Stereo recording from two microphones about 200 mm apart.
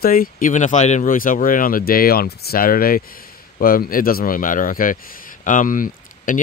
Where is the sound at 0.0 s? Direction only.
45° left (ahead or behind).